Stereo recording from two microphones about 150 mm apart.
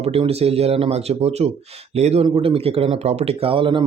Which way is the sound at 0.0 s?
45° right (ahead or behind).